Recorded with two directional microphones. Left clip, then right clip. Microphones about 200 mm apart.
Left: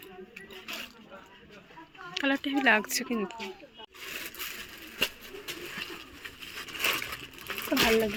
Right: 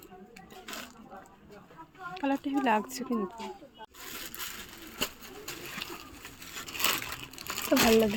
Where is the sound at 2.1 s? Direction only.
10° right (ahead or behind).